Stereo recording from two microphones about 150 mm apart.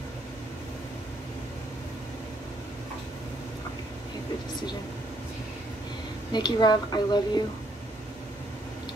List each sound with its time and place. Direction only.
6.3 s speech: 30° left (ahead or behind)